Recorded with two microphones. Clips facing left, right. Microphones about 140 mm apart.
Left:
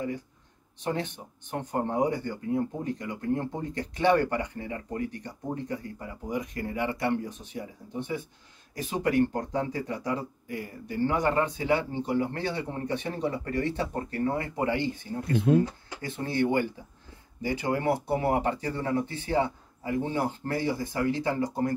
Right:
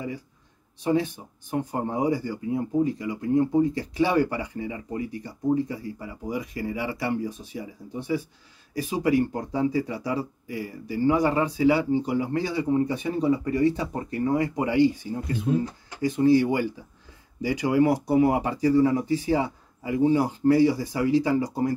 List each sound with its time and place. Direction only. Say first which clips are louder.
1.5 s speech: right 2 dB; 10° right (ahead or behind)
8.8 s speech: right 2 dB; 10° right (ahead or behind)
15.3 s speech: left 3 dB; 60° left (ahead or behind)
16.0 s speech: right 9 dB; 10° right (ahead or behind)